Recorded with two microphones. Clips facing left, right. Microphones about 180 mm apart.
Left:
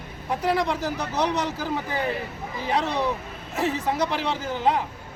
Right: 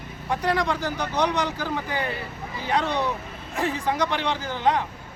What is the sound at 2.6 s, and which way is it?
Speech, 30° left (ahead or behind).